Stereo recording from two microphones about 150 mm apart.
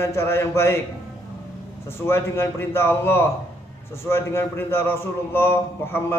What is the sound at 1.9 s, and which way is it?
A man's voice, 15° left (ahead or behind).